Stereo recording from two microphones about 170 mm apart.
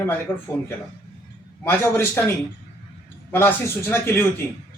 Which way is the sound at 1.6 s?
15° left (ahead or behind).